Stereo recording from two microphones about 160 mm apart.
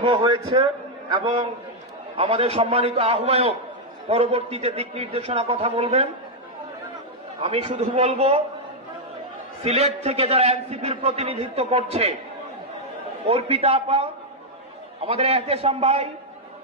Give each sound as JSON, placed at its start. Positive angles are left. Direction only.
{"t": 0.0, "sound": "a man's voice", "side_deg": -35}
{"t": 2.1, "sound": "a man's voice", "side_deg": -40}
{"t": 7.3, "sound": "a man's voice", "side_deg": -40}
{"t": 9.6, "sound": "a man's voice", "side_deg": -40}
{"t": 13.3, "sound": "a man's voice", "side_deg": -40}
{"t": 15.0, "sound": "a man's voice", "side_deg": -40}